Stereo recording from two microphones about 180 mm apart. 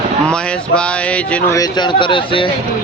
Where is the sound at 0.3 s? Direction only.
5° left (ahead or behind).